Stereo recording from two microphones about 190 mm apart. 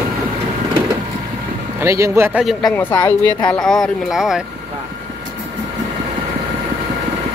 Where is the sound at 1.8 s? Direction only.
15° right (ahead or behind).